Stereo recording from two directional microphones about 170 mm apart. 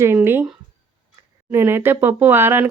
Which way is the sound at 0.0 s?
15° right (ahead or behind).